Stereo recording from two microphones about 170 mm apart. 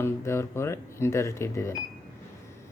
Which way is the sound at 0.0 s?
15° left (ahead or behind).